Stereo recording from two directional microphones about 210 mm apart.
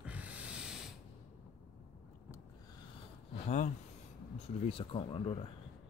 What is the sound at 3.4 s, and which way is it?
Speech, 35° left (ahead or behind).